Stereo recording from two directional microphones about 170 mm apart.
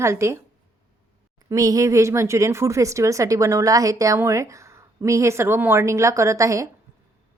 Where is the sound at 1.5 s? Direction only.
20° right (ahead or behind).